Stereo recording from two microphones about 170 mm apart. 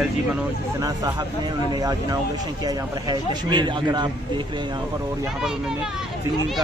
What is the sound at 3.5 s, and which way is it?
Speech, 25° right (ahead or behind).